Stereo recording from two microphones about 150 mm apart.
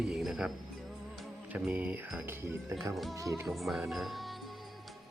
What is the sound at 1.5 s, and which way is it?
Speech, 10° right (ahead or behind).